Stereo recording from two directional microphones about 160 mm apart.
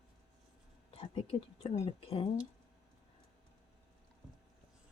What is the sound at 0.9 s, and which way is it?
Speech, 35° left (ahead or behind).